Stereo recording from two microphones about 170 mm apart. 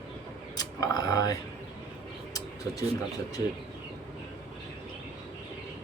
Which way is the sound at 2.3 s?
20° left (ahead or behind).